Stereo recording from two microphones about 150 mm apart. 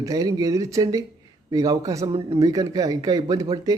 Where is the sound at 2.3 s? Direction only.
25° right (ahead or behind).